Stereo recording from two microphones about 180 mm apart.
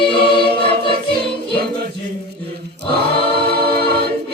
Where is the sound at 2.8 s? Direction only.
60° right (ahead or behind).